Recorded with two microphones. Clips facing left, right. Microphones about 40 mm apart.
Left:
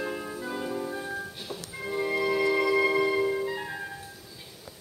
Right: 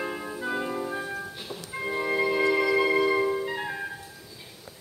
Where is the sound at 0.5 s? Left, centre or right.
Right.